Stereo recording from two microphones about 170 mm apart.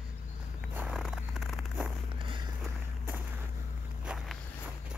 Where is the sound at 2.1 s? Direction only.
30° right (ahead or behind).